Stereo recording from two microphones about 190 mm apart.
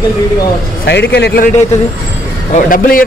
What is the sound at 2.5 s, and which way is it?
Speech, 45° left (ahead or behind).